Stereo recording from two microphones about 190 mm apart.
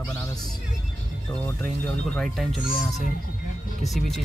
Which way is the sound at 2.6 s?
45° left (ahead or behind).